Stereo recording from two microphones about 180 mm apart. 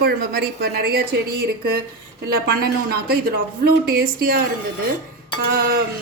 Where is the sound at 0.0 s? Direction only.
60° right (ahead or behind).